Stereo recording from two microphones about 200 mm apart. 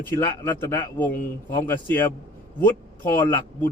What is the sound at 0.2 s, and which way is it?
A man's voice, 10° left (ahead or behind).